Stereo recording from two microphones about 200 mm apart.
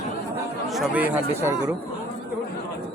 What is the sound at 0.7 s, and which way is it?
Speech, 5° right (ahead or behind).